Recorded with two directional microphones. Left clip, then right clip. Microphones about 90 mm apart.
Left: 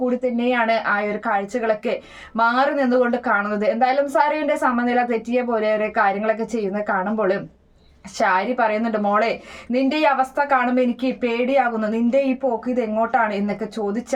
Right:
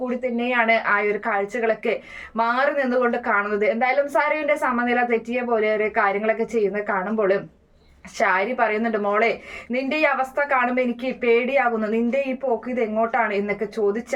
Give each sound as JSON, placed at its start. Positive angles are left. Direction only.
{"t": 0.3, "sound": "speech", "side_deg": 40}